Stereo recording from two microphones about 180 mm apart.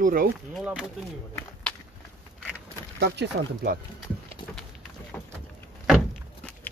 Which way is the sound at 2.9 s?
70° right (ahead or behind).